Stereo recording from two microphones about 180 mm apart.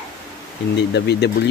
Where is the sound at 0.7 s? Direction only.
70° left (ahead or behind).